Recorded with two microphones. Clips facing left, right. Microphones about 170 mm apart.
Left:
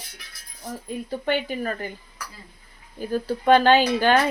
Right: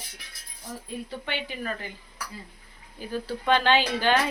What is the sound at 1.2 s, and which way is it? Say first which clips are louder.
Speech: left 9 dB; 45° left (ahead or behind).